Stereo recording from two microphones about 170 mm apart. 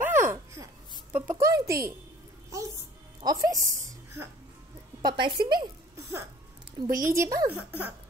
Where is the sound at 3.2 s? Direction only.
20° right (ahead or behind).